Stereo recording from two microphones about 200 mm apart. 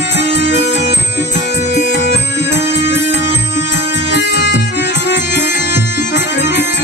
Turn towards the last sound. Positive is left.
turn(degrees=60)  # may be behind; listen again after turning